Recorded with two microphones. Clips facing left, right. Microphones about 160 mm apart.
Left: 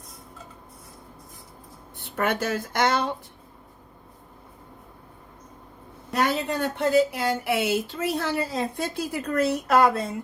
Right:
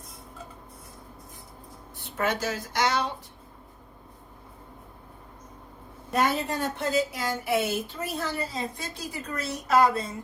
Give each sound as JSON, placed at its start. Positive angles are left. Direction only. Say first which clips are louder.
{"t": 2.0, "sound": "speech", "louder": "left 3 dB", "side_deg": 55}
{"t": 6.1, "sound": "speech", "louder": "left 1 dB", "side_deg": 65}